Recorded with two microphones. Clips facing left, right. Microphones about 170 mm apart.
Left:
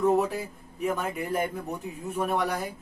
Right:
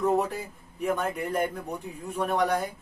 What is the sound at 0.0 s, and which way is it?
Speech, centre (ahead or behind).